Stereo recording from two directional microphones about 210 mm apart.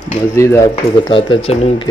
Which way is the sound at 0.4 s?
15° left (ahead or behind).